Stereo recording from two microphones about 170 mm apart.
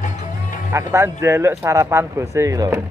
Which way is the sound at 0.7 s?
15° right (ahead or behind).